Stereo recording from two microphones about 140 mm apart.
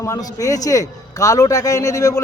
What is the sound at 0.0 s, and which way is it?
A man's voice, 25° left (ahead or behind).